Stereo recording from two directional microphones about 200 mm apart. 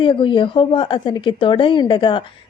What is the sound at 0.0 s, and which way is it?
A woman's voice, 25° left (ahead or behind).